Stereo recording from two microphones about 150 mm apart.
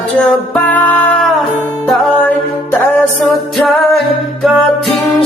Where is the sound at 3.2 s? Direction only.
Centre (ahead or behind).